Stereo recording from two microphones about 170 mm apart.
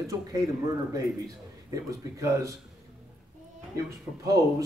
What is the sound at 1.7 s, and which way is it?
Speech, 20° right (ahead or behind).